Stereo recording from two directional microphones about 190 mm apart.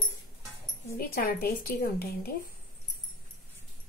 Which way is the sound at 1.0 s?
50° left (ahead or behind).